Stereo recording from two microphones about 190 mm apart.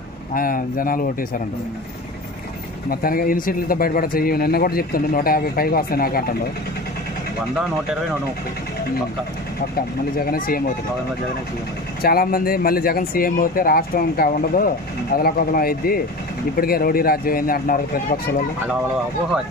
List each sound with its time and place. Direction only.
0.3 s speech: 45° left (ahead or behind)
2.9 s speech: 50° left (ahead or behind)
9.8 s speech: 50° left (ahead or behind)
12.0 s speech: 50° left (ahead or behind)